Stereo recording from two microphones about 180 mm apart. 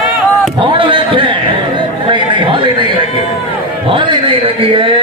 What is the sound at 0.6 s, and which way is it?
Chatter, 30° right (ahead or behind).